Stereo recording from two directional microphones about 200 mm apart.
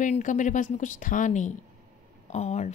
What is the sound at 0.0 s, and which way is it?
Speech, 40° left (ahead or behind).